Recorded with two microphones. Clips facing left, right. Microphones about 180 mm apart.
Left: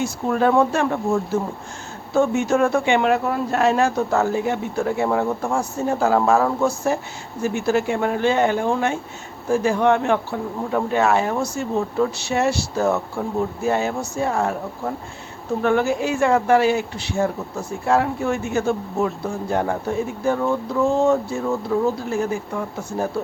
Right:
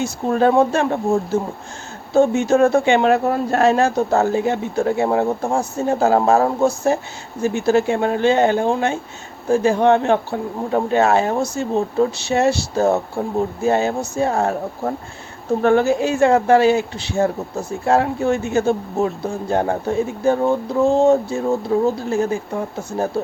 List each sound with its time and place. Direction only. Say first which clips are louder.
0.0 s speech: right 3 dB; 30° right (ahead or behind)
14.3 s speech: right 3 dB; 40° right (ahead or behind)